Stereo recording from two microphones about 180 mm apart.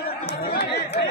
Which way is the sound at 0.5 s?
65° left (ahead or behind).